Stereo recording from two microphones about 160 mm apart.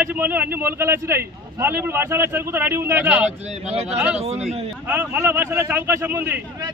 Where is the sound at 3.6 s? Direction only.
40° right (ahead or behind).